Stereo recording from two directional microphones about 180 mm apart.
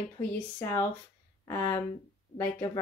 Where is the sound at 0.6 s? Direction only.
15° left (ahead or behind).